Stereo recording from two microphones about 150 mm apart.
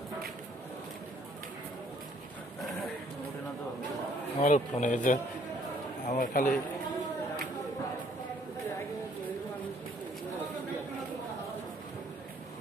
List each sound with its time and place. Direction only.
4.4 s speech: 55° left (ahead or behind)